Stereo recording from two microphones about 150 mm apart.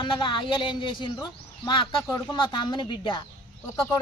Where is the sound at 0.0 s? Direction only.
35° left (ahead or behind).